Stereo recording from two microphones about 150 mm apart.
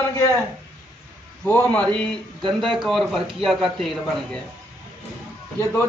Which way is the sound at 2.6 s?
Centre (ahead or behind).